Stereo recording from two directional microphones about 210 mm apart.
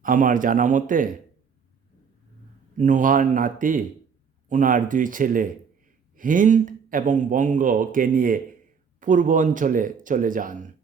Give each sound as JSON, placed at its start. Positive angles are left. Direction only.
{"t": 0.0, "sound": "speech", "side_deg": -40}
{"t": 2.7, "sound": "speech", "side_deg": -40}